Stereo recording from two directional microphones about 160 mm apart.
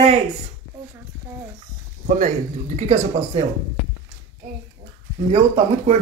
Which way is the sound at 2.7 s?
50° right (ahead or behind).